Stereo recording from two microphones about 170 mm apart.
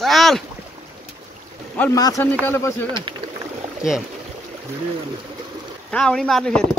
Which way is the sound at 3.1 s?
30° right (ahead or behind).